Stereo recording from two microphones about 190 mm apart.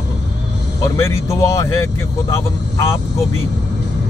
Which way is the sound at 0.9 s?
15° left (ahead or behind).